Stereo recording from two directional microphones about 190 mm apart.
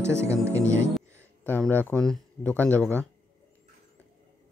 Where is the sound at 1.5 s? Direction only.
10° left (ahead or behind).